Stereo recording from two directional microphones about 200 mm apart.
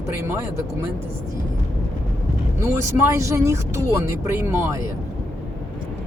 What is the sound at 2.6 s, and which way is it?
Speech, 15° right (ahead or behind).